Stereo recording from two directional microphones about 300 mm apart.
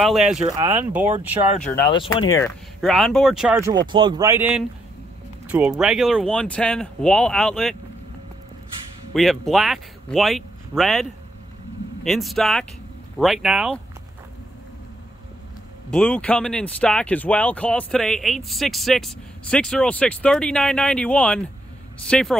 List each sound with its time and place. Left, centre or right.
0.0 s speech: centre
0.4 s speech: centre
1.9 s speech: centre
2.8 s speech: centre
9.1 s speech: centre
15.9 s speech: centre